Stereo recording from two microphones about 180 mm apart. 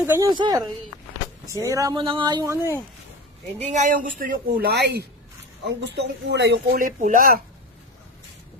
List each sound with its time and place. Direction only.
0.0 s speech: 10° right (ahead or behind)
0.3 s speech: 25° right (ahead or behind)
3.6 s a woman's voice: 40° right (ahead or behind); by 6.7 s 75° right (ahead or behind)
6.7 s a woman's voice: 45° right (ahead or behind)